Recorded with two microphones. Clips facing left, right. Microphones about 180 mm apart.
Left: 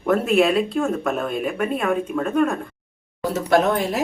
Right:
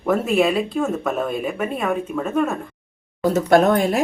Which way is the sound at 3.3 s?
50° right (ahead or behind).